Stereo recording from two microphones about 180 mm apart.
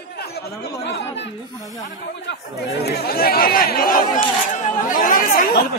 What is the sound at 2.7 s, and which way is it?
Speech, 65° left (ahead or behind).